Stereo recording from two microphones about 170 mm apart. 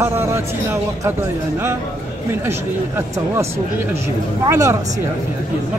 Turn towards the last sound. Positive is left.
turn(degrees=-20)  # may be behind; listen again after turning